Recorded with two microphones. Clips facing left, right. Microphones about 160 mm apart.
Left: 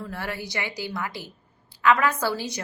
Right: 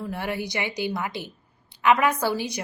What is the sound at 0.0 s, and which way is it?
A woman's voice, 15° right (ahead or behind).